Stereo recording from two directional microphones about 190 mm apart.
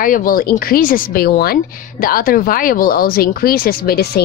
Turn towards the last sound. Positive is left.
turn(degrees=55)  # may be behind; listen again after turning